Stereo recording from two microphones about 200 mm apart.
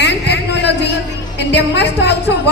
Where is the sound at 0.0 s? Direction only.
60° left (ahead or behind).